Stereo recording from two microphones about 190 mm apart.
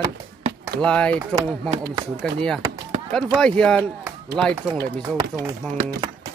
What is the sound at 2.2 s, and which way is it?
Speech, 5° left (ahead or behind).